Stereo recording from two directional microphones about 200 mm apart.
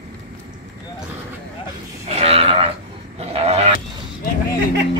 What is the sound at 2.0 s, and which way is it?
Sheep, 30° right (ahead or behind).